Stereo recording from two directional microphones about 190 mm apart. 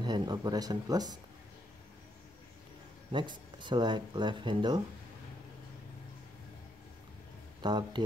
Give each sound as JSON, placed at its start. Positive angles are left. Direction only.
{"t": 0.0, "sound": "speech", "side_deg": -20}
{"t": 3.1, "sound": "speech", "side_deg": -25}
{"t": 7.6, "sound": "speech", "side_deg": -25}